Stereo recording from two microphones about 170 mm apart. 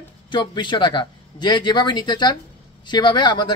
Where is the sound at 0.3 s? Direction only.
25° left (ahead or behind).